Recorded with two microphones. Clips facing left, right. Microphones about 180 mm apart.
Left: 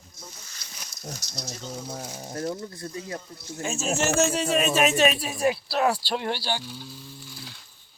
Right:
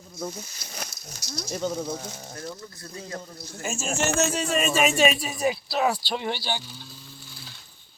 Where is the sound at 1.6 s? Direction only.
55° right (ahead or behind).